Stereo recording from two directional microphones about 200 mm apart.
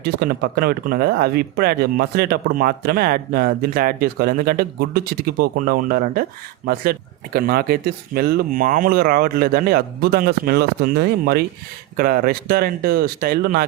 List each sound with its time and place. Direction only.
0.0 s speech: 50° right (ahead or behind)
7.3 s speech: 50° right (ahead or behind)